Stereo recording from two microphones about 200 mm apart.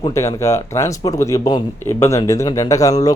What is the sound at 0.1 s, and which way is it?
A man's voice, 15° left (ahead or behind).